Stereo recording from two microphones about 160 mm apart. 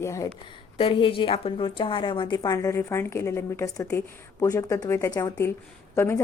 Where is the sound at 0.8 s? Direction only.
35° left (ahead or behind).